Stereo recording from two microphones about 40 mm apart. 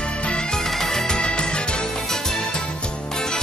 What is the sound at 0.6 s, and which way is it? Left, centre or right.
Music, centre.